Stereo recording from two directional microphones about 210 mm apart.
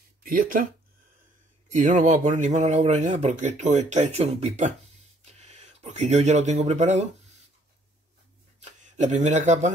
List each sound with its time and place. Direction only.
0.2 s speech: 40° right (ahead or behind)
1.8 s speech: 35° right (ahead or behind)
8.5 s speech: 35° right (ahead or behind)